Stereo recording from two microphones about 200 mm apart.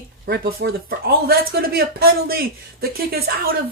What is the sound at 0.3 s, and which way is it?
Speech, 50° right (ahead or behind).